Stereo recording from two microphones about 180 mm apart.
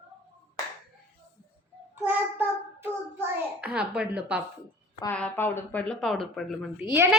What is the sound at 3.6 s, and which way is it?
Speech, 5° right (ahead or behind).